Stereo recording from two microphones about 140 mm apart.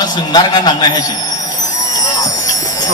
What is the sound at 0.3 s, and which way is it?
Speech, 30° left (ahead or behind).